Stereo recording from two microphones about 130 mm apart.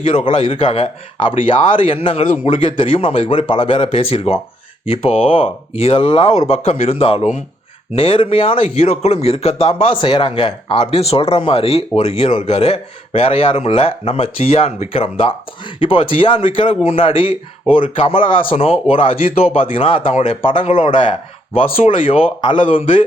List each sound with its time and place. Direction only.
0.3 s speech: 45° left (ahead or behind)